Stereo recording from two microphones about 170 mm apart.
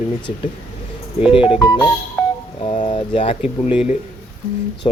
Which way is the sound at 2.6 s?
35° left (ahead or behind).